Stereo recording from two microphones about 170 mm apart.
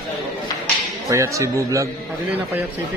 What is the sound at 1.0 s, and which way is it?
Speech, 20° right (ahead or behind).